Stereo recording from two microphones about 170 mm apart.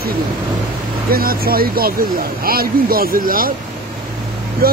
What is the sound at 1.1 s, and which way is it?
Speech, 60° right (ahead or behind).